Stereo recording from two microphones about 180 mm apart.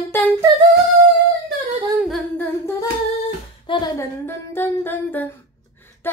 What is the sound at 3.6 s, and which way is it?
Speech, 25° left (ahead or behind).